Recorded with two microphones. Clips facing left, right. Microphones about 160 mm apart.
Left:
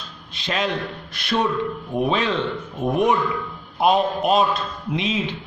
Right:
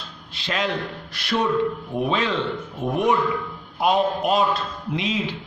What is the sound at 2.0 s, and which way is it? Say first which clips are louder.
A man's voice: left 2 dB; 20° left (ahead or behind).